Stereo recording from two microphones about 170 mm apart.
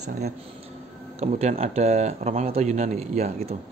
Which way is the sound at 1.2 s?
40° right (ahead or behind).